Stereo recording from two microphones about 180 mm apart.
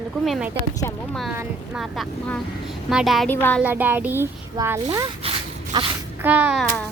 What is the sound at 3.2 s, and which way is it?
Speech, 10° left (ahead or behind).